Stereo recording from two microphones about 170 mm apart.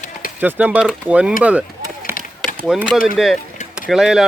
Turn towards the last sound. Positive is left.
turn(degrees=-5)  # may be behind; listen again after turning